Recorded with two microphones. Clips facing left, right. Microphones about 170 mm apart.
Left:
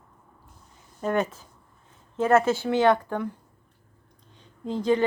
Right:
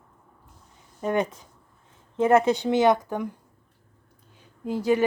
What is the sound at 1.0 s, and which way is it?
Speech, 15° right (ahead or behind).